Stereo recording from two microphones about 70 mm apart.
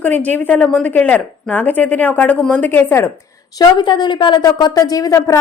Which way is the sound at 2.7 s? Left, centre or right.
Left.